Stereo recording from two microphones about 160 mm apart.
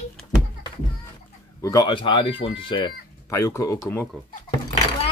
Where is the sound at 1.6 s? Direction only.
20° left (ahead or behind).